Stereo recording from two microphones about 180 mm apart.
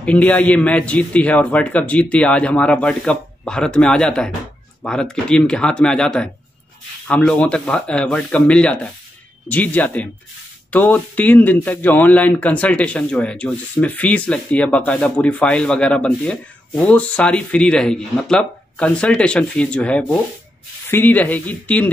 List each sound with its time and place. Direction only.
0.0 s speech: 5° left (ahead or behind)